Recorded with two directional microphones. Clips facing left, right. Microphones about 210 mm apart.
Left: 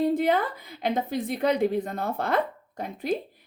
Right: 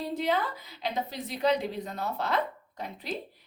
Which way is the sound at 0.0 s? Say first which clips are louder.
Left 6 dB; 50° left (ahead or behind).